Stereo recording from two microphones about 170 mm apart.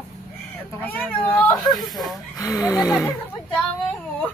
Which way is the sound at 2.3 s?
20° left (ahead or behind).